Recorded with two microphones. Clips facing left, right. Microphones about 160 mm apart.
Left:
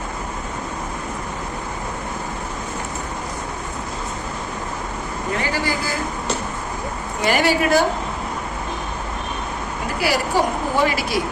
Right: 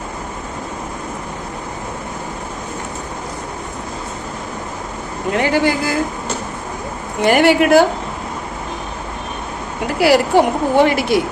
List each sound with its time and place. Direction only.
5.4 s speech: 65° right (ahead or behind)
7.3 s speech: 60° right (ahead or behind)
10.0 s speech: 65° right (ahead or behind)